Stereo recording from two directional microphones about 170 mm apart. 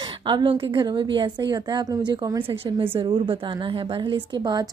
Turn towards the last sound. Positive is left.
turn(degrees=-25)  # may be behind; listen again after turning